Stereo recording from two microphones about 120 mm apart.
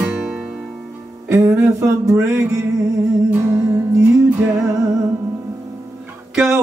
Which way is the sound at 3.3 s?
20° right (ahead or behind).